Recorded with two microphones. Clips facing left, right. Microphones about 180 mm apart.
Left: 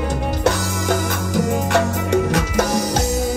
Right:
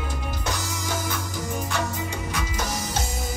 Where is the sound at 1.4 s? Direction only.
70° left (ahead or behind).